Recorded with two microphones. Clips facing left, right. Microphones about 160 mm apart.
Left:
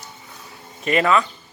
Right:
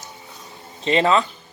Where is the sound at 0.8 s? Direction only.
25° right (ahead or behind).